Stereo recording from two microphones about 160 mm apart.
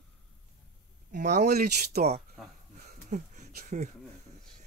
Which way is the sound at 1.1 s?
50° right (ahead or behind).